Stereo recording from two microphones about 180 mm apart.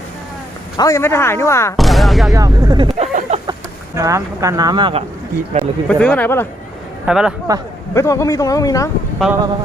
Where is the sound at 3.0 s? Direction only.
40° right (ahead or behind).